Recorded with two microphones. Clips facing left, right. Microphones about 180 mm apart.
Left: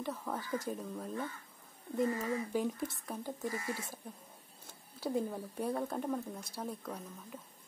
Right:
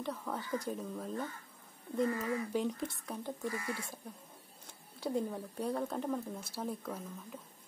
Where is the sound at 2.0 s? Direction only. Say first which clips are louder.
Left 1 dB; 20° left (ahead or behind).